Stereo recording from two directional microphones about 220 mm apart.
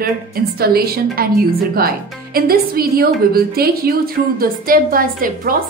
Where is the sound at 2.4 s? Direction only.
45° right (ahead or behind).